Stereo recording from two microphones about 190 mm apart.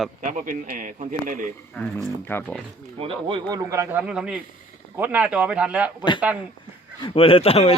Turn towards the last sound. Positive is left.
turn(degrees=30)  # may be behind; listen again after turning